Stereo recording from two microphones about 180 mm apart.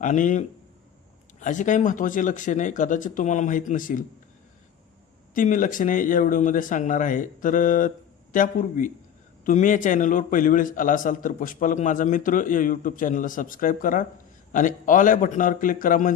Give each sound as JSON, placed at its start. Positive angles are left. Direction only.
{"t": 0.0, "sound": "a man's voice", "side_deg": 45}
{"t": 5.3, "sound": "a man's voice", "side_deg": 45}